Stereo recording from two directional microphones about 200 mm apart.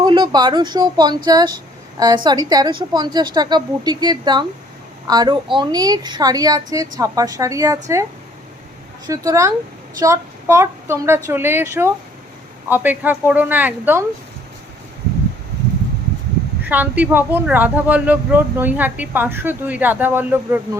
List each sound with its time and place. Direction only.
0.0 s a woman's voice: 20° right (ahead or behind)
9.0 s speech: 15° right (ahead or behind)
16.6 s speech: 10° right (ahead or behind)